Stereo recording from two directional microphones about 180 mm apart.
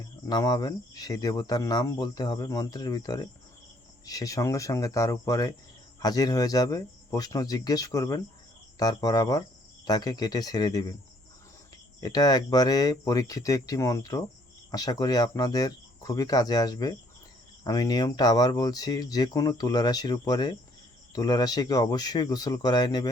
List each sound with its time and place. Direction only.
0.3 s speech: 20° left (ahead or behind)
11.9 s speech: 20° left (ahead or behind)